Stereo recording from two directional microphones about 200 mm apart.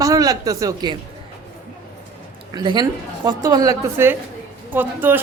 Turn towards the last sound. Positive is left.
turn(degrees=-10)  # may be behind; listen again after turning